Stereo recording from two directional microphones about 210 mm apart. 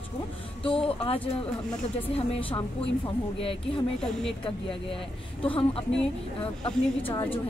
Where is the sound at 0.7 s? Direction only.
25° left (ahead or behind).